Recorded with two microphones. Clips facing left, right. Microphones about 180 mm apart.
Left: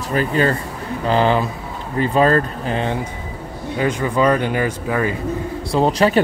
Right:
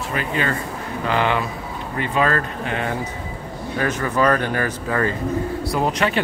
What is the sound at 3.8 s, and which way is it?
Speech, 15° left (ahead or behind).